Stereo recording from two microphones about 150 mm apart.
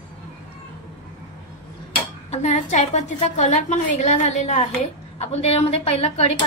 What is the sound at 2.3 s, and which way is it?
A woman's voice, 50° left (ahead or behind).